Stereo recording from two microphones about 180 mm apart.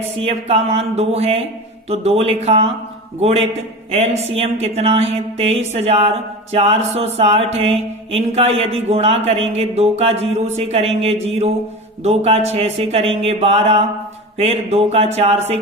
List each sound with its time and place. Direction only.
0.2 s mantra: 35° right (ahead or behind)
3.9 s mantra: 35° right (ahead or behind)